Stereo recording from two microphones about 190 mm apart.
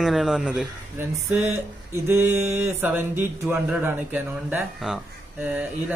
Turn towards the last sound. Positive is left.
turn(degrees=-5)  # may be behind; listen again after turning